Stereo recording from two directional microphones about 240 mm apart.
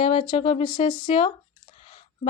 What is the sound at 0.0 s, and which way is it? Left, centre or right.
A woman's voice, left.